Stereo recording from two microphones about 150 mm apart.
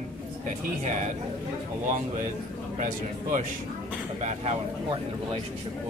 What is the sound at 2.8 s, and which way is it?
Speech, 55° right (ahead or behind).